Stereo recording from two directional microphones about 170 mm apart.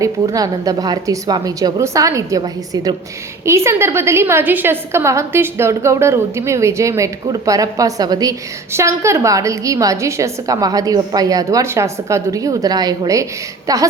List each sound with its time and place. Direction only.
0.0 s a woman's voice: 20° right (ahead or behind)